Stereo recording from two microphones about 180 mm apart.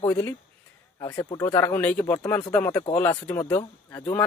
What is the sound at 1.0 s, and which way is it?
Speech, 20° left (ahead or behind).